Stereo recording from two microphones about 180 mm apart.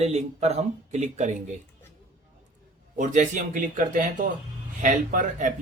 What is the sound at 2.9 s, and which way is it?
A man's voice, 40° right (ahead or behind).